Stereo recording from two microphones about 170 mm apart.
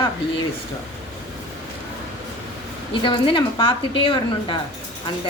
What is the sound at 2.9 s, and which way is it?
A woman's voice, 30° left (ahead or behind).